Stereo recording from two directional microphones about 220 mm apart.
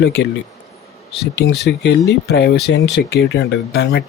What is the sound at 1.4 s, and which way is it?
Speech, 50° left (ahead or behind).